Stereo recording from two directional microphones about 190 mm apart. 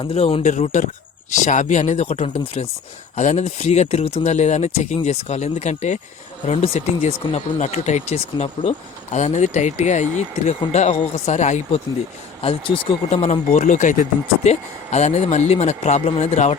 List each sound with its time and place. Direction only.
0.0 s speech: 30° left (ahead or behind)
0.5 s speech: 40° left (ahead or behind)
13.5 s speech: 40° left (ahead or behind)